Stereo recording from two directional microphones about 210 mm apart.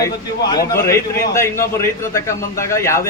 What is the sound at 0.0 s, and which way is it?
A man's voice, 15° left (ahead or behind).